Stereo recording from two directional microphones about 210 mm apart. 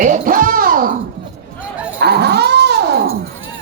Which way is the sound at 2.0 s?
50° right (ahead or behind).